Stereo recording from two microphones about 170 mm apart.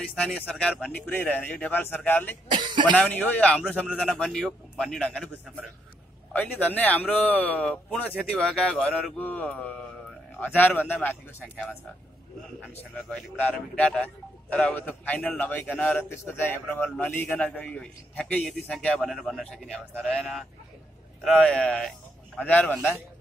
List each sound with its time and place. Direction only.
0.1 s a man's voice: 5° left (ahead or behind)
2.5 s a sound: 25° right (ahead or behind)
2.9 s a man's voice: 10° left (ahead or behind)
3.8 s a man's voice: 5° right (ahead or behind)
6.3 s a man's voice: 10° left (ahead or behind)
13.1 s a man's voice: 5° left (ahead or behind)